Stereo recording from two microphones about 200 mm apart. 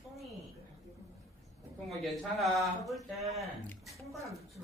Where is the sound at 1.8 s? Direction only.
Centre (ahead or behind).